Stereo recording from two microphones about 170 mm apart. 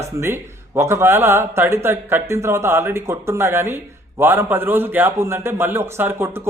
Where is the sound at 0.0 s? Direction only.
15° right (ahead or behind).